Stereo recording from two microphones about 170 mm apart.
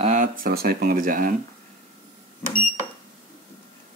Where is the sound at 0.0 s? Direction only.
50° right (ahead or behind).